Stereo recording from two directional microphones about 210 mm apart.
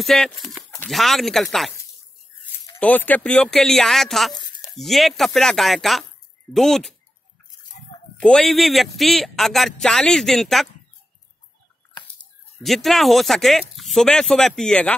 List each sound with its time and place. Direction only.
0.0 s a man's voice: centre (ahead or behind)
4.3 s a sound: 20° left (ahead or behind)
4.7 s a man's voice: centre (ahead or behind)
8.2 s a man's voice: 5° left (ahead or behind)
12.6 s a man's voice: centre (ahead or behind)